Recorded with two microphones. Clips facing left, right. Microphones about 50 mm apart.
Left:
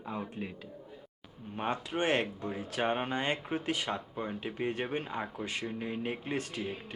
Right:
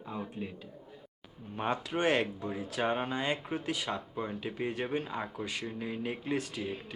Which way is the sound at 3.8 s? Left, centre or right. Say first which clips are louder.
Even; centre.